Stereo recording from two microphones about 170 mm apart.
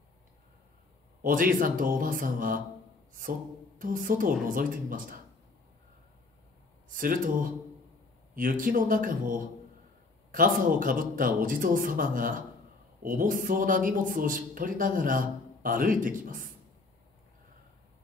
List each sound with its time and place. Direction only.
1.2 s speech: 55° right (ahead or behind)
6.9 s speech: 55° right (ahead or behind)